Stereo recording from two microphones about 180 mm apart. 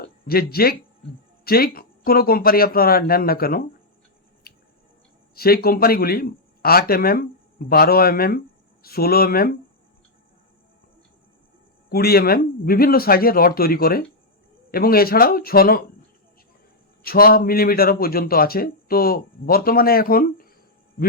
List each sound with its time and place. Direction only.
0.0 s a man's voice: 55° left (ahead or behind)
4.5 s a sound: 60° left (ahead or behind)
5.3 s a man's voice: 55° left (ahead or behind)
11.9 s a man's voice: 60° left (ahead or behind)
17.0 s a man's voice: 55° left (ahead or behind)